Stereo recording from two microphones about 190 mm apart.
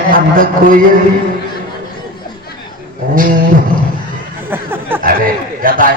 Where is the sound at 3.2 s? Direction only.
50° right (ahead or behind).